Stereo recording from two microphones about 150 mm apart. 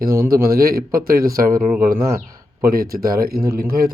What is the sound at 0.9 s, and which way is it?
Speech, 80° right.